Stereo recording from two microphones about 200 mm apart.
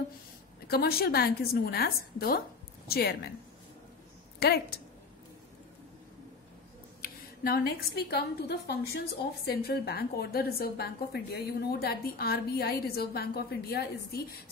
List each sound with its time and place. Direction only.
0.7 s a woman's voice: 50° left (ahead or behind)
4.4 s a woman's voice: 50° left (ahead or behind)
7.0 s a woman's voice: 50° left (ahead or behind)